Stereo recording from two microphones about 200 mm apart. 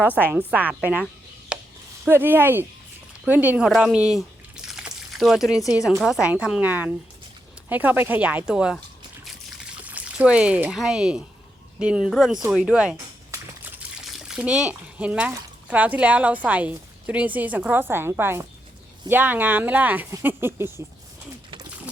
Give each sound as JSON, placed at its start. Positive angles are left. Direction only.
{"t": 0.0, "sound": "a woman's voice", "side_deg": -10}
{"t": 9.2, "sound": "pour", "side_deg": -5}
{"t": 11.8, "sound": "a woman's voice", "side_deg": -5}
{"t": 14.0, "sound": "speech", "side_deg": 0}